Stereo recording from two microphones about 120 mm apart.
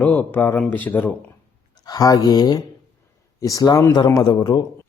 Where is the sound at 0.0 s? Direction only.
15° left (ahead or behind).